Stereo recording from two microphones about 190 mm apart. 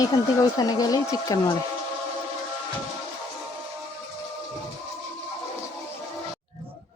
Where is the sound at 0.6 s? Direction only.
20° left (ahead or behind).